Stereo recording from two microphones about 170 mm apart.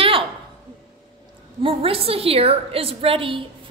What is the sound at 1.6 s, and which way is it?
A woman's voice, 35° right (ahead or behind).